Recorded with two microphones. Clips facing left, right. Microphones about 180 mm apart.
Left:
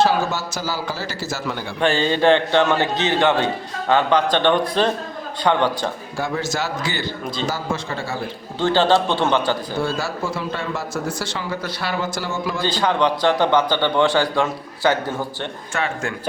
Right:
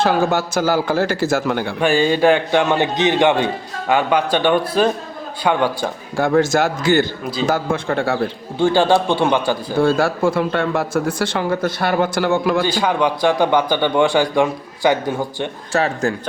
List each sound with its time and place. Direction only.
0.0 s speech: 55° right (ahead or behind)
1.8 s a man's voice: 10° right (ahead or behind)
6.1 s a man's voice: 55° right (ahead or behind)
8.5 s a man's voice: 10° right (ahead or behind)
9.8 s speech: 55° right (ahead or behind)
12.6 s a man's voice: 10° right (ahead or behind)
15.7 s a man's voice: 35° right (ahead or behind)